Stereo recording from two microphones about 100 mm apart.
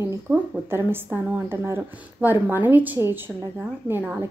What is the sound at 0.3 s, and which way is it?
A woman's voice, 20° right (ahead or behind).